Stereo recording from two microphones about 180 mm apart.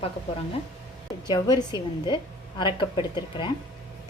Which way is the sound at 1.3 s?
20° left (ahead or behind).